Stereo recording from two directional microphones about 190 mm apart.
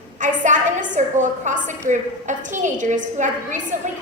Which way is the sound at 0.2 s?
40° right (ahead or behind).